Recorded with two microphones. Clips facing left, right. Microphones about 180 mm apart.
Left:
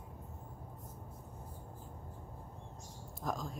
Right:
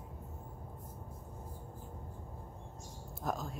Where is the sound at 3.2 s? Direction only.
5° right (ahead or behind).